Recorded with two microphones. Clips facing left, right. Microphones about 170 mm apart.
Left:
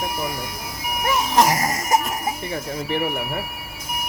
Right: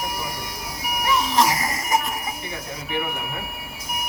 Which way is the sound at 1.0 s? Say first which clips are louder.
Left 2 dB; 50° left (ahead or behind).